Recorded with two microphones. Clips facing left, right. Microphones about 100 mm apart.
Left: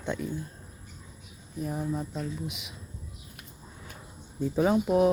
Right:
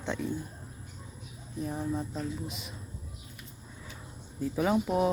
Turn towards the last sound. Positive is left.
turn(degrees=0)  # may be behind; listen again after turning